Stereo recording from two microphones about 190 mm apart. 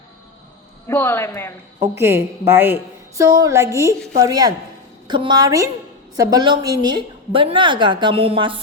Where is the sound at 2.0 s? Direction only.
15° right (ahead or behind).